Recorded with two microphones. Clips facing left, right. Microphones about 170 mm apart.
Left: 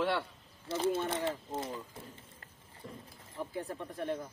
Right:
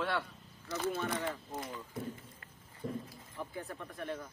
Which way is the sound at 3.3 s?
25° left (ahead or behind).